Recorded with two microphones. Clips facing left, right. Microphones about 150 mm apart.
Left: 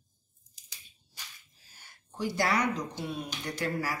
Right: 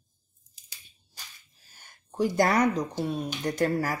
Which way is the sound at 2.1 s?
50° right (ahead or behind).